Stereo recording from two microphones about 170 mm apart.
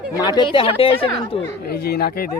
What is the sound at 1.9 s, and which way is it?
Speech, 65° left (ahead or behind).